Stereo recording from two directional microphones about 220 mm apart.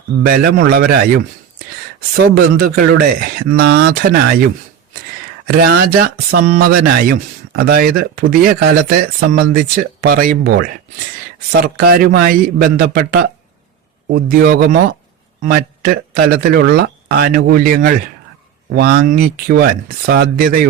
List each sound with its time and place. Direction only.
0.2 s speech: 40° right (ahead or behind)
3.7 s speech: 65° right (ahead or behind)
5.6 s speech: 45° right (ahead or behind)